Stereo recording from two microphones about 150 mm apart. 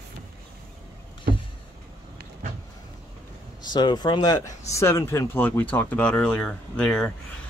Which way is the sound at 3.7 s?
30° left (ahead or behind).